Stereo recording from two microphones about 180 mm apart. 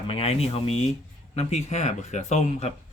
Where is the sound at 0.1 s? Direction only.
35° left (ahead or behind).